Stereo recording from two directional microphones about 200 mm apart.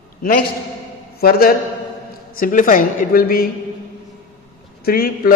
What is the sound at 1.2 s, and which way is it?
A man's voice, 50° left (ahead or behind).